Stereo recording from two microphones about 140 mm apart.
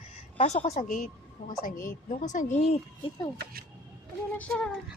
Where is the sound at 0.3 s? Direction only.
50° left (ahead or behind).